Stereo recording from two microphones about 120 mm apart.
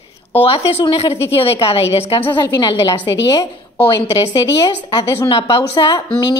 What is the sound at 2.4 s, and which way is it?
A woman's voice, 25° left (ahead or behind).